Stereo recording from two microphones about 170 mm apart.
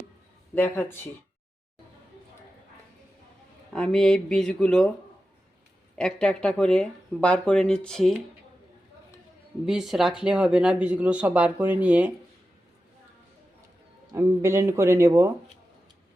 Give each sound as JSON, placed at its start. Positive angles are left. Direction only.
{"t": 0.5, "sound": "speech", "side_deg": 10}
{"t": 3.7, "sound": "speech", "side_deg": 5}
{"t": 6.0, "sound": "speech", "side_deg": 5}
{"t": 9.6, "sound": "speech", "side_deg": 0}
{"t": 14.1, "sound": "speech", "side_deg": -15}